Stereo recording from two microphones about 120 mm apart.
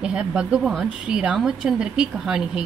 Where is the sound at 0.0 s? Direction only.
5° right (ahead or behind).